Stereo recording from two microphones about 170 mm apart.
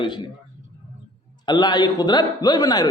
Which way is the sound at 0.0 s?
30° left (ahead or behind).